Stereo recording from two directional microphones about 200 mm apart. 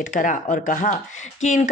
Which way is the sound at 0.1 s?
40° left (ahead or behind).